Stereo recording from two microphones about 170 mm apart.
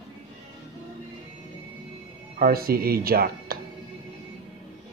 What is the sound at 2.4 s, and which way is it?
Speech, 60° right (ahead or behind).